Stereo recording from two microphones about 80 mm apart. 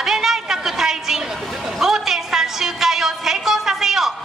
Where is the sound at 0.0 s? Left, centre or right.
Centre.